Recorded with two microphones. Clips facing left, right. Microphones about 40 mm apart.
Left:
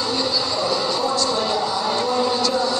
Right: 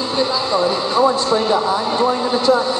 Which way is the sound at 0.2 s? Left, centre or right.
Right.